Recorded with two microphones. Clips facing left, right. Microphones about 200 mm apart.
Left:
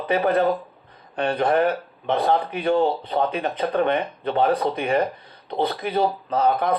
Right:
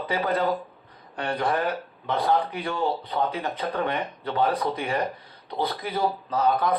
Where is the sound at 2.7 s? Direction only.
60° left (ahead or behind).